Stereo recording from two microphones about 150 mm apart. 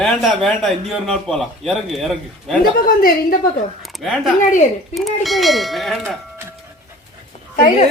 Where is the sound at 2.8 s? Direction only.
70° left (ahead or behind).